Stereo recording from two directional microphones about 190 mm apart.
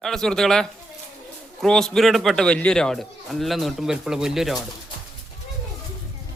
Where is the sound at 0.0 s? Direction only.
Centre (ahead or behind).